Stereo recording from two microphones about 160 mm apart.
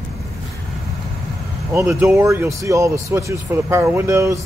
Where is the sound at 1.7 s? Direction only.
15° right (ahead or behind).